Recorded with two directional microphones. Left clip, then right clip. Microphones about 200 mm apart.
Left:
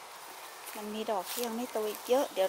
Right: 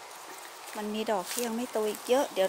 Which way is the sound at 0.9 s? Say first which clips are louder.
Right 3 dB; 20° right (ahead or behind).